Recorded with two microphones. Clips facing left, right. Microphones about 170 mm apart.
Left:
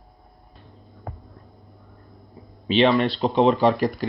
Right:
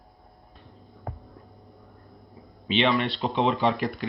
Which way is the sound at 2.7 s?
40° left (ahead or behind).